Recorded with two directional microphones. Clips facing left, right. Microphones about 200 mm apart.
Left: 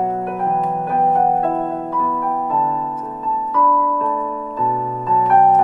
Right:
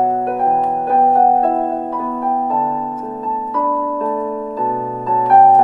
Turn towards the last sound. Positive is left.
turn(degrees=-35)  # may be behind; listen again after turning